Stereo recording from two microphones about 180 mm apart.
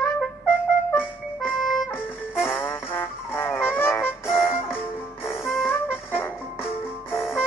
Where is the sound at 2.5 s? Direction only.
10° left (ahead or behind).